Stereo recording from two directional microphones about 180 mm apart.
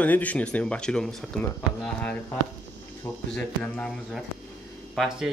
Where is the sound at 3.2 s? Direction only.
5° left (ahead or behind).